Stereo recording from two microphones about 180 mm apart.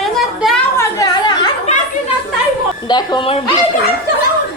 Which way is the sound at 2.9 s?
25° left (ahead or behind).